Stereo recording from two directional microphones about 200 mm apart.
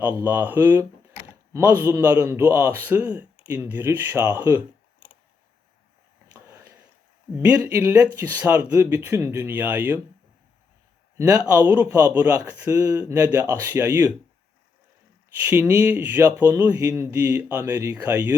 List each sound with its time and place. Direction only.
0.2 s a man's voice: 10° right (ahead or behind)
6.3 s a sound: 15° right (ahead or behind)
7.3 s a man's voice: 10° right (ahead or behind)
11.2 s a man's voice: 20° right (ahead or behind)
15.4 s a man's voice: 10° right (ahead or behind)